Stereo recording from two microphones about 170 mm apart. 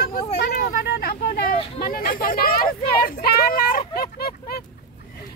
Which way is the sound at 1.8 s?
60° left (ahead or behind).